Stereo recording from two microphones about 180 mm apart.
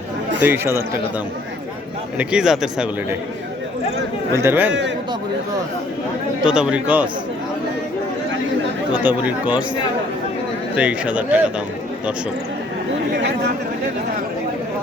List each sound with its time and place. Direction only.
0.3 s speech: 10° right (ahead or behind)
2.1 s a man's voice: 5° right (ahead or behind)
4.4 s speech: 10° right (ahead or behind)
4.7 s a man's voice: 80° right
6.4 s a man's voice: 5° right (ahead or behind)
9.0 s speech: 10° right (ahead or behind)
10.8 s speech: 5° right (ahead or behind)